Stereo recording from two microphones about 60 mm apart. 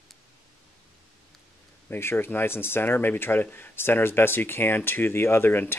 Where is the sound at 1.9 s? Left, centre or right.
Left.